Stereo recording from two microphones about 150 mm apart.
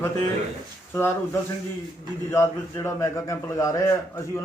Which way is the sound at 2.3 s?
15° left (ahead or behind).